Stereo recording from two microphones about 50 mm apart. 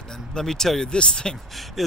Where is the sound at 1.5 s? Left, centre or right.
Centre.